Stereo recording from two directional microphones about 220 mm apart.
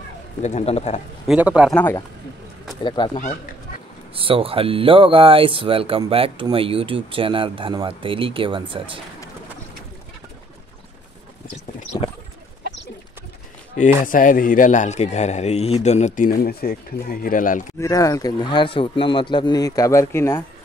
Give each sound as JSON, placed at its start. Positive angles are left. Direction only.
{"t": 0.4, "sound": "speech", "side_deg": 30}
{"t": 1.2, "sound": "speech", "side_deg": -5}
{"t": 1.8, "sound": "speech", "side_deg": 10}
{"t": 2.8, "sound": "speech", "side_deg": 20}
{"t": 4.1, "sound": "speech", "side_deg": -25}
{"t": 14.0, "sound": "speech", "side_deg": 40}
{"t": 17.7, "sound": "speech", "side_deg": 15}